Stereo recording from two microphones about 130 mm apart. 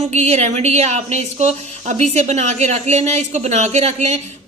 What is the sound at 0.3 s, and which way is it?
A woman's voice, 60° right (ahead or behind).